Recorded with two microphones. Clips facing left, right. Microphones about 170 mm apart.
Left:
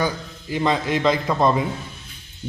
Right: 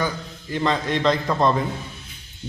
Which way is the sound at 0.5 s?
10° left (ahead or behind).